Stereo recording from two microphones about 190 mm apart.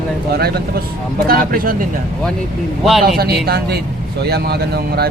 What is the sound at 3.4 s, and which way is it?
Speech, 55° right (ahead or behind).